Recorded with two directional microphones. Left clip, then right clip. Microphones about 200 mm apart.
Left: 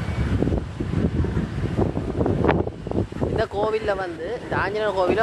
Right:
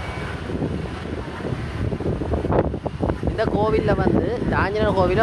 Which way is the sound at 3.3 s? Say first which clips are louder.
Right 2 dB; 5° left (ahead or behind).